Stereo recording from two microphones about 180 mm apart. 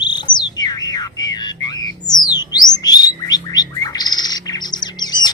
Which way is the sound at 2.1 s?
20° left (ahead or behind).